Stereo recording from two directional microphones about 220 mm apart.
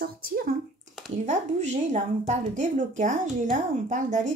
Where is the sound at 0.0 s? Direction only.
45° right (ahead or behind).